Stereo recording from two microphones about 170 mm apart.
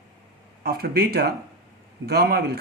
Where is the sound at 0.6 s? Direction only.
65° right (ahead or behind).